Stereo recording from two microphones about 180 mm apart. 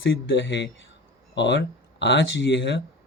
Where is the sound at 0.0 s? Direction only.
90° left.